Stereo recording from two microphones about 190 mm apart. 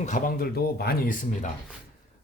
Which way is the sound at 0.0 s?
45° left (ahead or behind).